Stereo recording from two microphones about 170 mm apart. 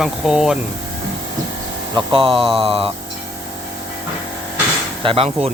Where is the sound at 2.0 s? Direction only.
30° right (ahead or behind).